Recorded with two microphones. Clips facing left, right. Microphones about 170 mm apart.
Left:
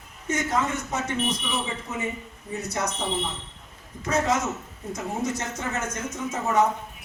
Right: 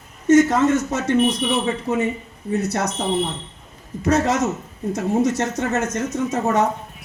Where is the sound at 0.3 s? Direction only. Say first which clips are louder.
Right 12 dB; 65° right (ahead or behind).